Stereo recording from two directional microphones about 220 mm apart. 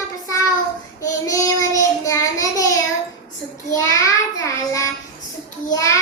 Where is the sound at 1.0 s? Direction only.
15° left (ahead or behind).